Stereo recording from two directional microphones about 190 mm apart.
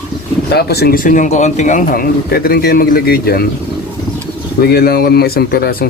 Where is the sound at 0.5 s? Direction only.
55° left (ahead or behind).